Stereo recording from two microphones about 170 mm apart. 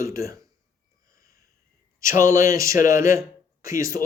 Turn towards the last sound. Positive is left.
turn(degrees=-20)  # may be behind; listen again after turning